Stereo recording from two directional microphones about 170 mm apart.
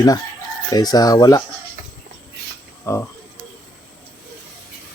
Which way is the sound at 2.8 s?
15° left (ahead or behind).